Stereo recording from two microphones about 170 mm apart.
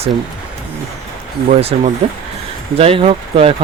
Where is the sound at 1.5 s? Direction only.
40° right (ahead or behind).